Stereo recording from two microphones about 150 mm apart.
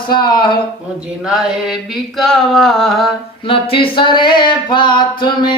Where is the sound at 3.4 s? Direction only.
35° left (ahead or behind).